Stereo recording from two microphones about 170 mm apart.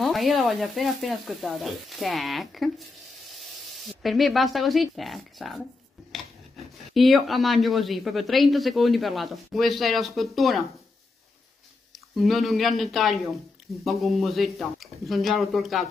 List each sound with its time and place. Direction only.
0.0 s speech: centre (ahead or behind)
4.0 s speech: centre (ahead or behind)
12.2 s speech: centre (ahead or behind)